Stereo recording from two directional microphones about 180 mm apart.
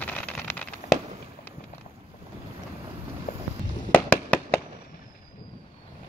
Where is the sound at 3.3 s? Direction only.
55° left (ahead or behind).